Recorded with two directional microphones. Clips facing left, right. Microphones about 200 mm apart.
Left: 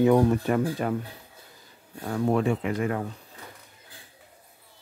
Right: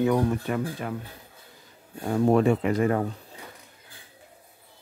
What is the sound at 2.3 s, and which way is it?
Speech, 40° right (ahead or behind).